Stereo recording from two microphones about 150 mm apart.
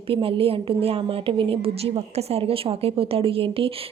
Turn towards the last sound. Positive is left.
turn(degrees=-40)  # may be behind; listen again after turning